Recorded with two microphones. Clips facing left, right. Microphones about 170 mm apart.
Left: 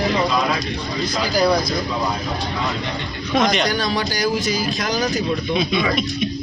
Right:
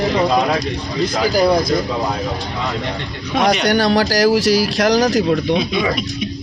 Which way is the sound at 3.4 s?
70° right (ahead or behind).